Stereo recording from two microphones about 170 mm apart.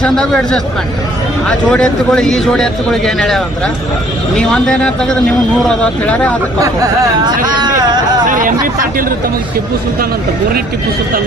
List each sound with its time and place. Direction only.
0.0 s a man's voice: 5° left (ahead or behind)
6.6 s speech: 20° right (ahead or behind)
7.4 s a sound: 25° right (ahead or behind)
8.3 s chatter: 50° right (ahead or behind)
8.6 s speech: 55° right (ahead or behind)